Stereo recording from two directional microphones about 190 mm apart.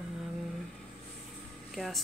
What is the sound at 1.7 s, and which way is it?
Speech, centre (ahead or behind).